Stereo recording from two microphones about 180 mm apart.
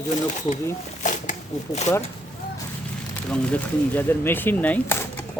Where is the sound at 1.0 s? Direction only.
45° left (ahead or behind).